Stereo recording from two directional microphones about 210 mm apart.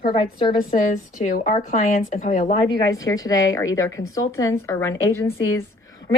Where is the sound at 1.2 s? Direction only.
35° left (ahead or behind).